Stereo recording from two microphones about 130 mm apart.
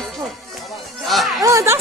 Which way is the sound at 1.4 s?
25° right (ahead or behind).